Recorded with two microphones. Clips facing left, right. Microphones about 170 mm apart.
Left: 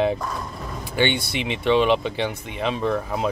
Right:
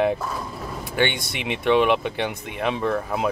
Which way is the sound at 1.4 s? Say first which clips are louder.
Even; 10° right (ahead or behind).